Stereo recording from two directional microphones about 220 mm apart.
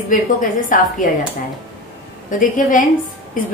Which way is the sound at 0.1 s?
35° left (ahead or behind).